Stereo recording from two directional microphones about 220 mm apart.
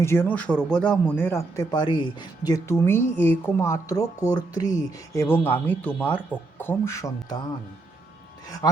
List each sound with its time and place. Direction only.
0.0 s speech: 10° left (ahead or behind)
8.4 s speech: 15° left (ahead or behind)